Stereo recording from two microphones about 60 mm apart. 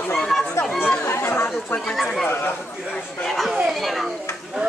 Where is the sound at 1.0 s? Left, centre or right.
Left.